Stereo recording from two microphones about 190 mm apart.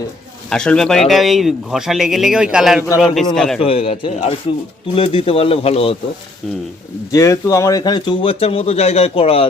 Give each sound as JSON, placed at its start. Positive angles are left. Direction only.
{"t": 0.5, "sound": "speech", "side_deg": 5}
{"t": 3.6, "sound": "speech", "side_deg": 30}
{"t": 7.1, "sound": "speech", "side_deg": 15}